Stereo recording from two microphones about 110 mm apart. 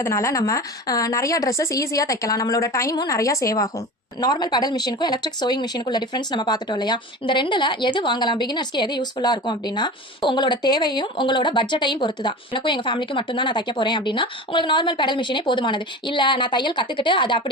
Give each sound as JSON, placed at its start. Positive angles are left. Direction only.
{"t": 0.0, "sound": "a woman's voice", "side_deg": 25}